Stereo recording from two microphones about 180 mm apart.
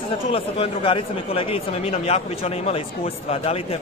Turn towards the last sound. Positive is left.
turn(degrees=35)  # may be behind; listen again after turning